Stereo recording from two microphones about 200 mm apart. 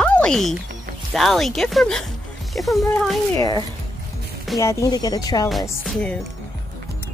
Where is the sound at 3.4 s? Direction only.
20° left (ahead or behind).